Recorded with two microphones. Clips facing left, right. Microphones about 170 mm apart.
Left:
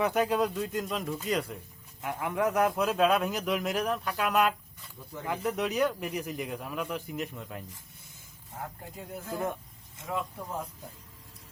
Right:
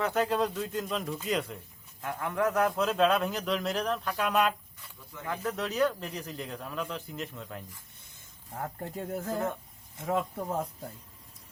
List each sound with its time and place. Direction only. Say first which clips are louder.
0.0 s speech: left 1 dB; 15° left (ahead or behind)
8.5 s speech: right 5 dB; 50° right (ahead or behind)